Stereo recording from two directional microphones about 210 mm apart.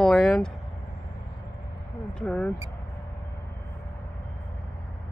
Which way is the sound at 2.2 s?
5° left (ahead or behind).